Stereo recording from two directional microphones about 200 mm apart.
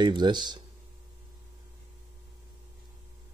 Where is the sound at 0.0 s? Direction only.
20° right (ahead or behind).